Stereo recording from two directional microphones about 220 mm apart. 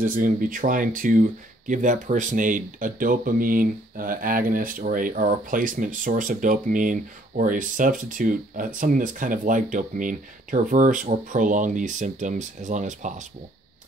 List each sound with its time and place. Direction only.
0.0 s speech: 40° right (ahead or behind)